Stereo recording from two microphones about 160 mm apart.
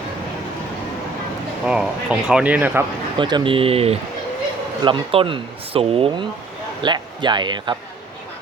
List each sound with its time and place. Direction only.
1.6 s speech: 5° right (ahead or behind)
3.2 s a man's voice: 30° right (ahead or behind)